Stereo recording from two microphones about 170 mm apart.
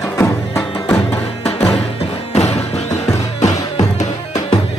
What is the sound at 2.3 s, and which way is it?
Music, 40° left (ahead or behind).